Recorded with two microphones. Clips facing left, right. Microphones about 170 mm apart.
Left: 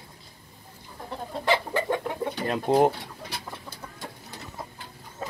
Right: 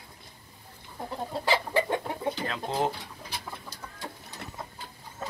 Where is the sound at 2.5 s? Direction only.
55° left (ahead or behind).